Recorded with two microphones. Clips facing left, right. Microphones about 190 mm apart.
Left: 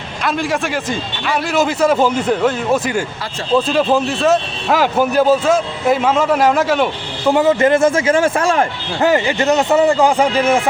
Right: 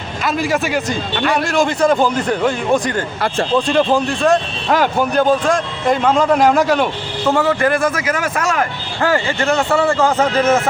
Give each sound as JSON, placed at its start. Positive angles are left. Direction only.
{"t": 0.3, "sound": "speech", "side_deg": 0}
{"t": 7.3, "sound": "speech", "side_deg": 20}